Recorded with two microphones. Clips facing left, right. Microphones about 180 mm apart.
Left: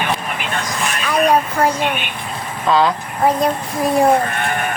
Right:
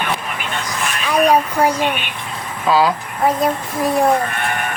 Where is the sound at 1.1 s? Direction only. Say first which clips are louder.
Right 1 dB; 10° right (ahead or behind).